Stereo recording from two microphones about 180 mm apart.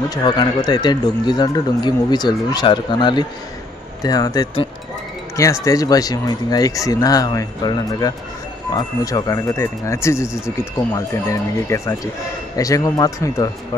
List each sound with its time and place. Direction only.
0.1 s speech: 25° left (ahead or behind)